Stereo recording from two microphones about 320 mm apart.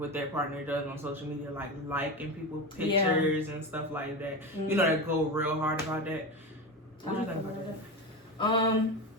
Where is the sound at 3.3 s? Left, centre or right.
Centre.